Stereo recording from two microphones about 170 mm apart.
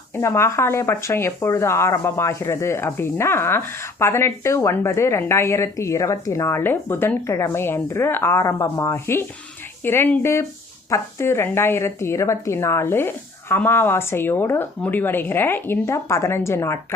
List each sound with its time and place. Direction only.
0.2 s speech: 15° left (ahead or behind)